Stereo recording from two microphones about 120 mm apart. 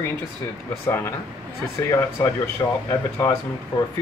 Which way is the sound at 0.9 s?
20° left (ahead or behind).